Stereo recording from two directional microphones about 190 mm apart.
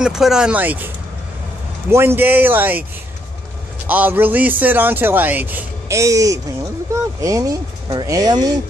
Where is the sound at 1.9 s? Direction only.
15° right (ahead or behind).